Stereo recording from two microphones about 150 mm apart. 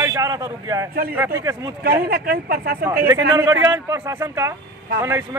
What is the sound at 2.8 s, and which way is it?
A man's voice, 20° right (ahead or behind).